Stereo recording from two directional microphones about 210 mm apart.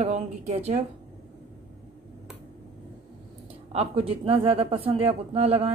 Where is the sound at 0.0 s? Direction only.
30° right (ahead or behind).